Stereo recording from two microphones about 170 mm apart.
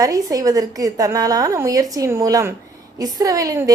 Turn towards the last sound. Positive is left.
turn(degrees=-20)  # may be behind; listen again after turning